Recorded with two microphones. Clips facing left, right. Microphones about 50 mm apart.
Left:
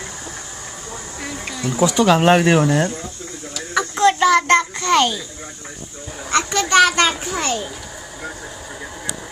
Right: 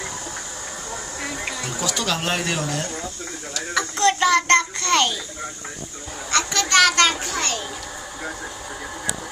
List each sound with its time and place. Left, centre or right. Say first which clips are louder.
1.2 s bee: left 2 dB; centre
1.7 s speech: left 12 dB; left
3.5 s a sound: left 3 dB; centre
6.3 s a child's voice: left 4 dB; centre